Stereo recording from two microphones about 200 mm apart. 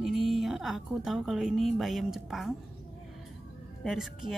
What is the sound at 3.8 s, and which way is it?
Speech, centre (ahead or behind).